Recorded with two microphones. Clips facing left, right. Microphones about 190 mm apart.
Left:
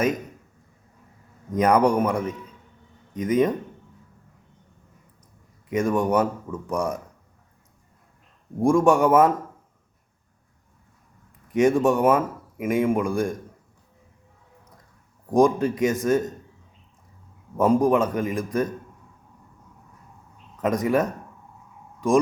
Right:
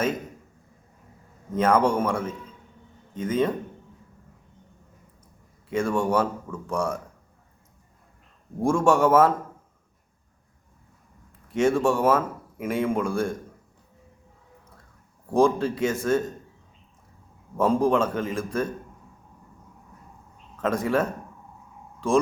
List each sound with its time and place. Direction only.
1.5 s speech: 15° left (ahead or behind)
5.6 s speech: 15° left (ahead or behind)
8.5 s speech: 15° left (ahead or behind)
11.5 s speech: 15° left (ahead or behind)
15.3 s speech: 15° left (ahead or behind)
17.6 s speech: 15° left (ahead or behind)
20.6 s speech: 15° left (ahead or behind)